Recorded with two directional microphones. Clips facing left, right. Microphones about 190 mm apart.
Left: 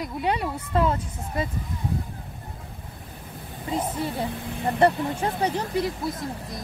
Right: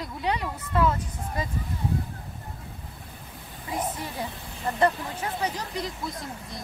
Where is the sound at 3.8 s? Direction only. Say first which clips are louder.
Left 3 dB; 10° left (ahead or behind).